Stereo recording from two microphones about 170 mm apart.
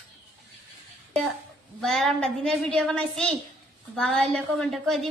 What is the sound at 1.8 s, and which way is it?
A woman's voice, centre (ahead or behind).